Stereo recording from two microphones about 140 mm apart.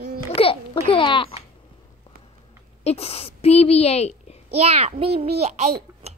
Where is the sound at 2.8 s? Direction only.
45° left (ahead or behind).